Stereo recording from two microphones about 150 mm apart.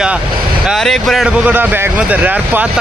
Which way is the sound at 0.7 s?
Centre (ahead or behind).